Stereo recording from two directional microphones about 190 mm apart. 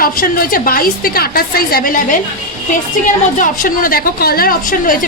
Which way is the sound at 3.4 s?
45° left (ahead or behind).